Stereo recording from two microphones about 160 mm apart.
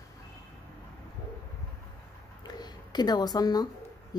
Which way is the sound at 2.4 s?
25° left (ahead or behind).